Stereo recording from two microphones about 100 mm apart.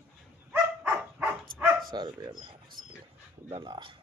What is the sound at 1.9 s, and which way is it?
Speech, 45° right (ahead or behind).